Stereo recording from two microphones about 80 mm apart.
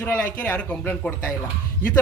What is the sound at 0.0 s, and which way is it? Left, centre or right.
A man's voice, centre.